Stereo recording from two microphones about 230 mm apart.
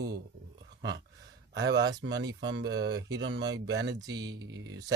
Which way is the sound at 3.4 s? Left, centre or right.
Right.